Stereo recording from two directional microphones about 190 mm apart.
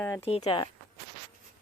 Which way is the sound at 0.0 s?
10° left (ahead or behind).